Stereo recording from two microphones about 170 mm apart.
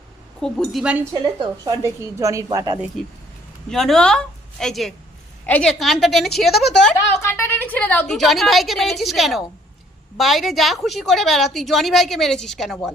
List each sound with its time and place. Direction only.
0.4 s a woman's voice: centre (ahead or behind)
1.1 s a woman's voice: 25° right (ahead or behind)
3.7 s a woman's voice: centre (ahead or behind)
7.3 s a woman's voice: 15° left (ahead or behind)